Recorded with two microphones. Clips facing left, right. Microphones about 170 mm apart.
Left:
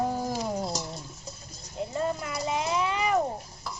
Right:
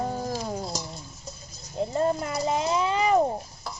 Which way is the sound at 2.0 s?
40° right (ahead or behind).